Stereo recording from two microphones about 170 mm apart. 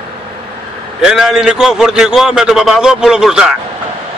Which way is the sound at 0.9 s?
5° right (ahead or behind).